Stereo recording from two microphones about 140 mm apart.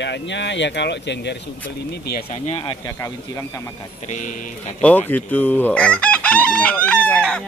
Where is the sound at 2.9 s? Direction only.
20° left (ahead or behind).